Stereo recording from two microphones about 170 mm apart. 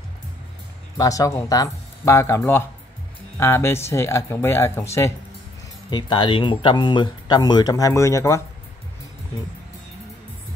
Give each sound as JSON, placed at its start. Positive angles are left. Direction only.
{"t": 0.9, "sound": "speech", "side_deg": 20}
{"t": 5.9, "sound": "speech", "side_deg": 25}